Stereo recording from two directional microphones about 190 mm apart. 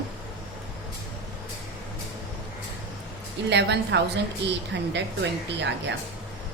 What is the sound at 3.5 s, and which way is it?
A woman's voice, 65° right (ahead or behind).